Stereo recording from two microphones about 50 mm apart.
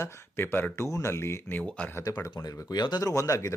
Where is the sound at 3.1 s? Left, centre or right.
Left.